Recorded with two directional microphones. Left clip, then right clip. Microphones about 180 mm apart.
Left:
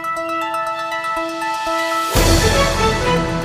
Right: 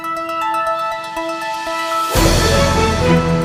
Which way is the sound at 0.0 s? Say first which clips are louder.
Right 1 dB; centre (ahead or behind).